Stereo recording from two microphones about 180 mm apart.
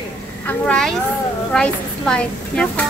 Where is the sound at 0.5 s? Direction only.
5° left (ahead or behind).